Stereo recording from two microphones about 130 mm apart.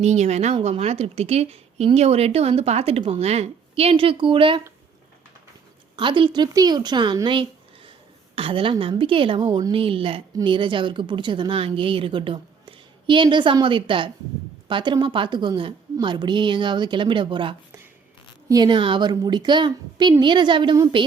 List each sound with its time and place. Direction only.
0.0 s a woman's voice: 60° right (ahead or behind); by 4.6 s 40° right (ahead or behind)
6.0 s a woman's voice: 40° right (ahead or behind)
9.5 s a woman's voice: 30° right (ahead or behind)
9.7 s speech: 45° right (ahead or behind)